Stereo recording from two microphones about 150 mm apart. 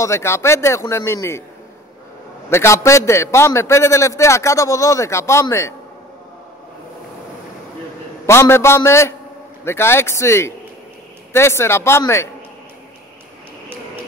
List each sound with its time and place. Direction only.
0.0 s speech: 20° left (ahead or behind)
2.5 s a man's voice: 20° left (ahead or behind)
8.3 s speech: 15° left (ahead or behind)